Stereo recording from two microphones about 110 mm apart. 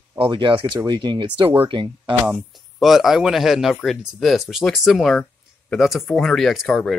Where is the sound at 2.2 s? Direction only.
Centre (ahead or behind).